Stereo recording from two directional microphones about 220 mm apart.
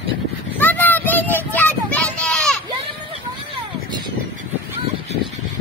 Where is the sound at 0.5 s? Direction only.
10° left (ahead or behind).